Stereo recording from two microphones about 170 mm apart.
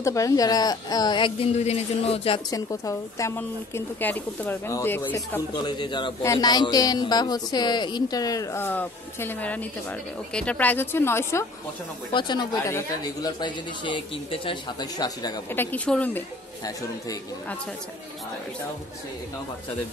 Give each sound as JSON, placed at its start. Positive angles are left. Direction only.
{"t": 0.0, "sound": "speech", "side_deg": 20}
{"t": 2.5, "sound": "speech", "side_deg": 20}
{"t": 5.6, "sound": "speech", "side_deg": 25}
{"t": 12.1, "sound": "speech", "side_deg": 25}
{"t": 15.5, "sound": "speech", "side_deg": 10}